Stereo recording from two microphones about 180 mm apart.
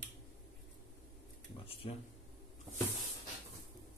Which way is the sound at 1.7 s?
30° left (ahead or behind).